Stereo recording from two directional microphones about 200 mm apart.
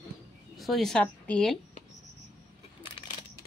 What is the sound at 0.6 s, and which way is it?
Speech, centre (ahead or behind).